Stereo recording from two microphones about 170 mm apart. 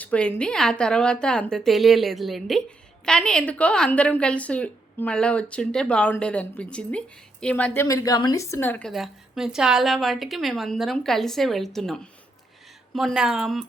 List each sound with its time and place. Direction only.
0.0 s a woman's voice: 5° left (ahead or behind)
8.9 s a woman's voice: centre (ahead or behind)